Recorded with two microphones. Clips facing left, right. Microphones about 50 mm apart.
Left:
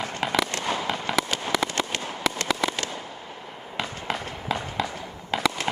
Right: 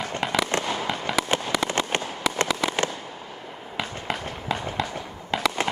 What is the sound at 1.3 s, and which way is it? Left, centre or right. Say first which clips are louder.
Fireworks: right 2 dB; right.